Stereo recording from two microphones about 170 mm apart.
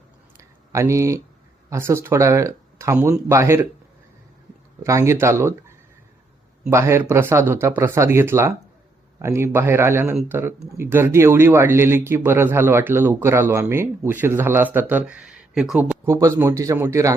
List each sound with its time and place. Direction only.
0.3 s a sound: 15° right (ahead or behind)
1.7 s speech: 15° right (ahead or behind)
4.8 s speech: 15° right (ahead or behind)
16.0 s a man's voice: 15° right (ahead or behind)